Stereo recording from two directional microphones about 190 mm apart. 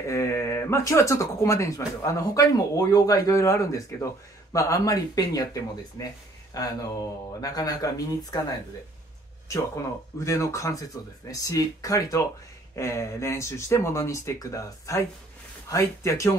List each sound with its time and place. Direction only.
0.1 s speech: 15° left (ahead or behind)
10.1 s speech: 15° left (ahead or behind)